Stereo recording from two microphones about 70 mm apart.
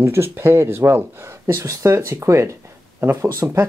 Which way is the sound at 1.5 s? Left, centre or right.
Right.